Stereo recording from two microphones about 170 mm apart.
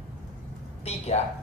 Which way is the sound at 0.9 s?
35° left (ahead or behind).